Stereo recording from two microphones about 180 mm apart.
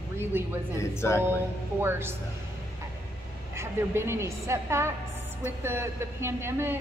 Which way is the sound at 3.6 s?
15° right (ahead or behind).